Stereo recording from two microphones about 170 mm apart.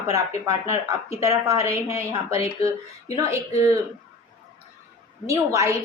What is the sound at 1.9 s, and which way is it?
Speech, 35° left (ahead or behind).